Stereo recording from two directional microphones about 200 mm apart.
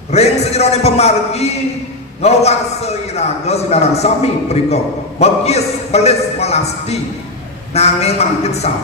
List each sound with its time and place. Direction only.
0.1 s a man's voice: 30° left (ahead or behind)